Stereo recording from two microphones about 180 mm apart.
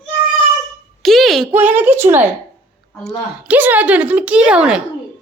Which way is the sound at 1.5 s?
10° right (ahead or behind).